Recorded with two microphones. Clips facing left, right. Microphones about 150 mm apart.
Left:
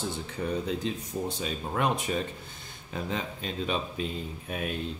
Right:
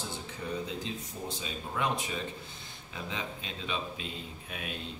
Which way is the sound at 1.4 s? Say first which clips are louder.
Left 3 dB; 55° left (ahead or behind).